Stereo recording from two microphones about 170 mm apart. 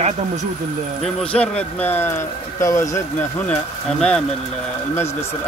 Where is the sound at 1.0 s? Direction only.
5° left (ahead or behind).